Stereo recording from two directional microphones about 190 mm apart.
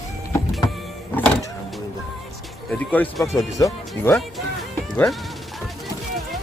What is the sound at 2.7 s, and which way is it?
Speech, 10° left (ahead or behind).